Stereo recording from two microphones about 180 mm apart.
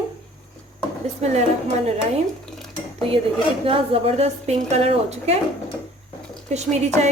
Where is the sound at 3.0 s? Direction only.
30° right (ahead or behind).